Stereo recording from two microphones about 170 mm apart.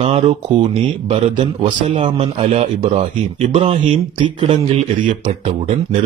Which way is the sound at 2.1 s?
35° right (ahead or behind).